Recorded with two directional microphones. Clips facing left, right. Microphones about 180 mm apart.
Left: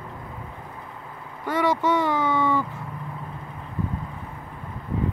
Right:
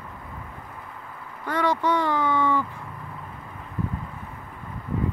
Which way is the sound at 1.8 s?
20° left (ahead or behind).